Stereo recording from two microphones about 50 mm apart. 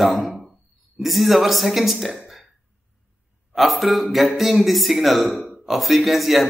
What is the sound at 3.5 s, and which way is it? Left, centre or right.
Speech, centre.